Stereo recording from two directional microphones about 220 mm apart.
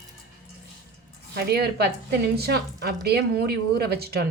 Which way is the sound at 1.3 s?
45° right (ahead or behind).